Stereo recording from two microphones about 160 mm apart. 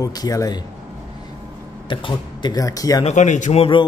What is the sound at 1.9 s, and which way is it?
Speech, 30° left (ahead or behind).